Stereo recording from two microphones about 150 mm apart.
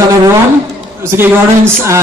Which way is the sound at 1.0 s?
15° right (ahead or behind).